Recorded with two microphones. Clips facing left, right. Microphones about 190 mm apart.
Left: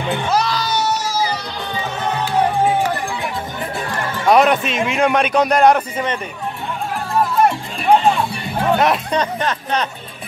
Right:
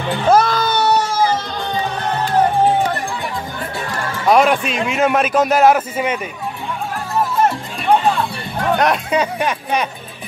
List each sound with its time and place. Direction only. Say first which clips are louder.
0.3 s music: right 8 dB; 50° right (ahead or behind)
4.3 s a man's voice: even; centre (ahead or behind)
8.7 s speech: right 2 dB; centre (ahead or behind)